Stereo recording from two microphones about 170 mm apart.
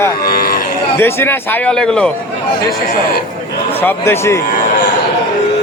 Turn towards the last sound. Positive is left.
turn(degrees=15)  # may be behind; listen again after turning